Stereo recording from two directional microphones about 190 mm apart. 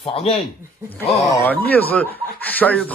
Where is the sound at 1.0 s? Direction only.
10° left (ahead or behind).